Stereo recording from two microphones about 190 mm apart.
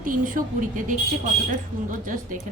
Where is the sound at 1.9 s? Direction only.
45° right (ahead or behind).